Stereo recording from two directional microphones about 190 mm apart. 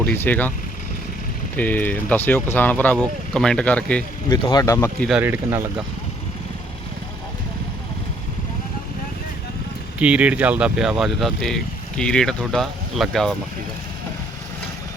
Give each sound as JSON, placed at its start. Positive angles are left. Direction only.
{"t": 0.0, "sound": "speech", "side_deg": 10}
{"t": 1.5, "sound": "speech", "side_deg": 10}
{"t": 4.3, "sound": "speech", "side_deg": 20}
{"t": 5.0, "sound": "speech", "side_deg": -5}
{"t": 10.0, "sound": "speech", "side_deg": -5}